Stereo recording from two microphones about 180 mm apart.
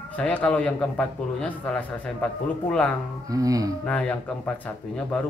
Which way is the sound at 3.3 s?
20° right (ahead or behind).